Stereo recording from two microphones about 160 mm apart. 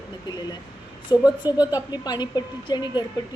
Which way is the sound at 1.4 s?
25° left (ahead or behind).